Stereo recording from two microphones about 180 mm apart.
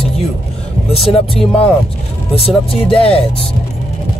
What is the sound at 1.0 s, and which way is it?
Speech, 30° left (ahead or behind).